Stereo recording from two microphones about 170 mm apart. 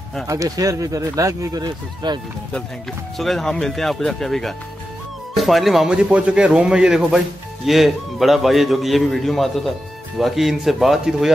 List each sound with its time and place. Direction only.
0.3 s speech: 20° right (ahead or behind)
3.2 s a man's voice: centre (ahead or behind)